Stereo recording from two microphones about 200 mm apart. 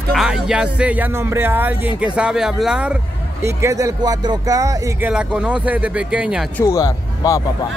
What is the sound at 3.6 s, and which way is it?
Speech, 15° right (ahead or behind).